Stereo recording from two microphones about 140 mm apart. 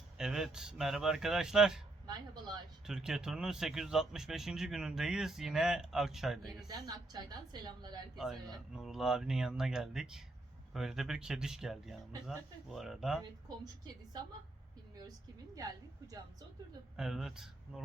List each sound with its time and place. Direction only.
0.2 s speech: 5° right (ahead or behind)
2.8 s speech: 5° right (ahead or behind)
6.7 s a woman's voice: 30° right (ahead or behind)
8.1 s speech: centre (ahead or behind)
13.8 s a woman's voice: 30° right (ahead or behind)
15.5 s a woman's voice: 25° right (ahead or behind)
17.0 s speech: 5° right (ahead or behind)